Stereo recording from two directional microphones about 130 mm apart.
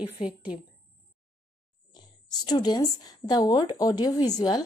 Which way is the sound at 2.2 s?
30° left (ahead or behind).